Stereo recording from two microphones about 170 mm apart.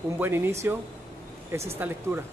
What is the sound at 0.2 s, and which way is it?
Speech, 15° right (ahead or behind).